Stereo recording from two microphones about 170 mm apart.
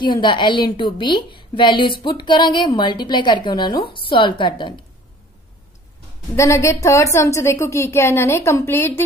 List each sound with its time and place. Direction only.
0.0 s a woman's voice: 25° left (ahead or behind)
6.3 s a woman's voice: 15° left (ahead or behind)